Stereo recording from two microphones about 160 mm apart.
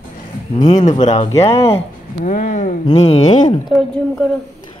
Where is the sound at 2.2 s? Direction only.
50° left (ahead or behind).